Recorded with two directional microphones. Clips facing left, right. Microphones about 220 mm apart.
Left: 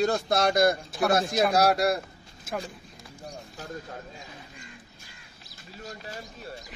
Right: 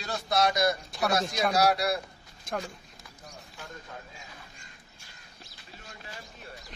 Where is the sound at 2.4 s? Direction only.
5° left (ahead or behind).